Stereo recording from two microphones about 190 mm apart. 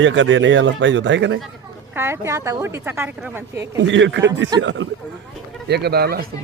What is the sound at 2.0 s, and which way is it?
Speech, 15° right (ahead or behind).